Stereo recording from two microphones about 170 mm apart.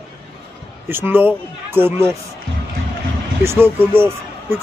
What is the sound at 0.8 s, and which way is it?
Speech, 10° right (ahead or behind).